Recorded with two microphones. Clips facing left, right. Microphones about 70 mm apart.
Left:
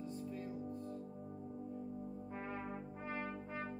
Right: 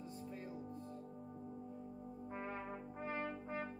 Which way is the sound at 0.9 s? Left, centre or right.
Centre.